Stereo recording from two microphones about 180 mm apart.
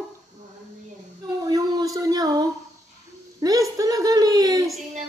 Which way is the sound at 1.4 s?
20° right (ahead or behind).